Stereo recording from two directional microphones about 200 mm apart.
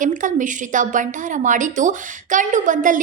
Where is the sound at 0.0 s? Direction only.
40° right (ahead or behind).